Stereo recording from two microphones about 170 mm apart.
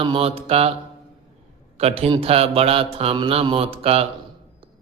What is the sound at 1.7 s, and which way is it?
A man's voice, 35° right (ahead or behind).